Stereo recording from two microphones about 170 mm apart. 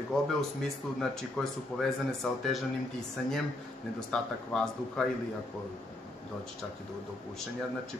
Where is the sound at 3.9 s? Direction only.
5° left (ahead or behind).